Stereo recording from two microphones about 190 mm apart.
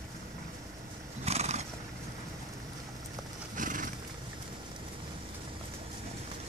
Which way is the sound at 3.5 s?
45° right (ahead or behind).